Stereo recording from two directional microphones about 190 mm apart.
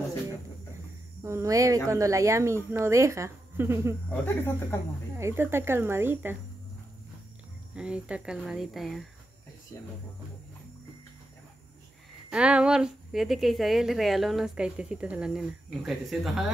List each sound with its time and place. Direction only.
1.2 s speech: 15° right (ahead or behind)
4.2 s speech: 10° left (ahead or behind)
5.1 s speech: 15° right (ahead or behind)
7.7 s speech: 5° right (ahead or behind)
12.3 s speech: 5° right (ahead or behind)